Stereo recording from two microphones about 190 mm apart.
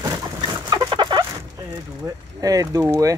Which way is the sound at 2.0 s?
15° right (ahead or behind).